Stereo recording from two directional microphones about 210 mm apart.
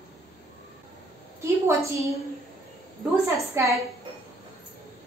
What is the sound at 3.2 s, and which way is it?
Speech, 15° right (ahead or behind).